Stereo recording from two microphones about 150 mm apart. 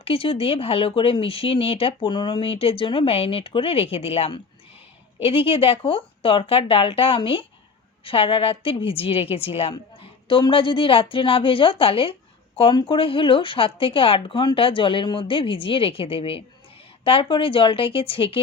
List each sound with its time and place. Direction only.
0.0 s speech: 35° left (ahead or behind)